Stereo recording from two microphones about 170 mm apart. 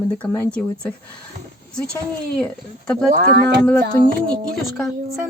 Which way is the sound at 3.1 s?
65° right (ahead or behind).